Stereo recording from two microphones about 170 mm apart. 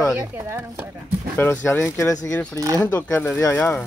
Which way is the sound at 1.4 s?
10° left (ahead or behind).